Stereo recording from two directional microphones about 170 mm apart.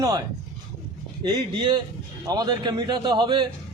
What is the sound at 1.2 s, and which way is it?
A man's voice, 25° right (ahead or behind).